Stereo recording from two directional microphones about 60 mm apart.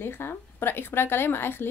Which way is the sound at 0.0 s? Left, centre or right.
Left.